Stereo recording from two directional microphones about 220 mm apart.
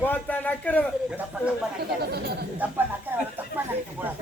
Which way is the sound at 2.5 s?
5° right (ahead or behind).